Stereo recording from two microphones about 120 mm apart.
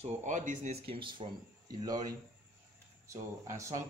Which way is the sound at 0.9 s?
45° right (ahead or behind).